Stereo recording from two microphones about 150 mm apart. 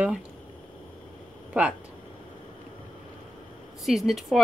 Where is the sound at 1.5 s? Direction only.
5° right (ahead or behind).